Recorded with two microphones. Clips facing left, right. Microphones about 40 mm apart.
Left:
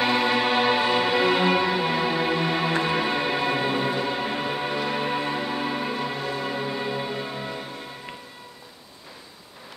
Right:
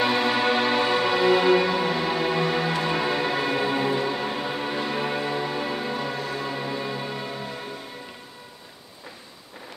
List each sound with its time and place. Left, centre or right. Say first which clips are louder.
0.0 s music: even; centre